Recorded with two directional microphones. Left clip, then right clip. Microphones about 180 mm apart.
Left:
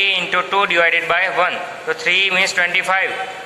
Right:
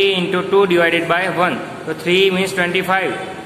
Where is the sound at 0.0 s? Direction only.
10° left (ahead or behind).